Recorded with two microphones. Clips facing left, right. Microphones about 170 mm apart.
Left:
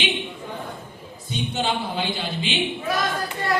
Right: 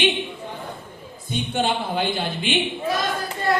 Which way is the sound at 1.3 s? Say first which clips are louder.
Right 2 dB; 55° right (ahead or behind).